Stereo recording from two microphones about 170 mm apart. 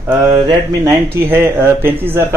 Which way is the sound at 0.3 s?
25° right (ahead or behind).